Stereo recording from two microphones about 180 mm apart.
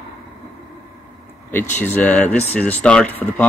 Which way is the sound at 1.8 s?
10° left (ahead or behind).